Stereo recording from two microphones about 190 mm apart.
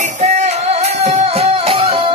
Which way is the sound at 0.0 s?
40° right (ahead or behind).